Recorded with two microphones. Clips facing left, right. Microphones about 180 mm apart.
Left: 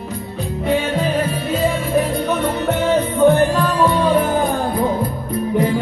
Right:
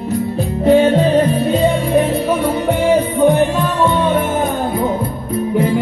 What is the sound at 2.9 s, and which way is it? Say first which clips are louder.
Music: even; 15° right (ahead or behind).